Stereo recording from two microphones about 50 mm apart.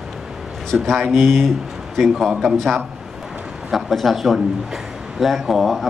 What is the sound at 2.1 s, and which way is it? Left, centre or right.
Speech, centre.